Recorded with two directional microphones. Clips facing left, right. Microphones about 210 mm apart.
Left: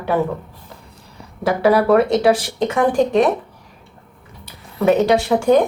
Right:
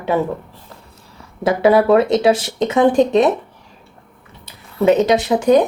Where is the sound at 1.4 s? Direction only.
20° right (ahead or behind).